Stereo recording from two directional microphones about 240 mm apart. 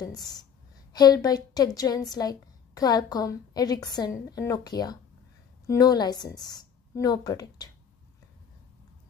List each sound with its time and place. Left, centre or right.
0.9 s a woman's voice: centre